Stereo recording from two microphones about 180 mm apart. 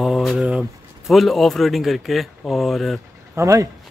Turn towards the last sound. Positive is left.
turn(degrees=-15)  # may be behind; listen again after turning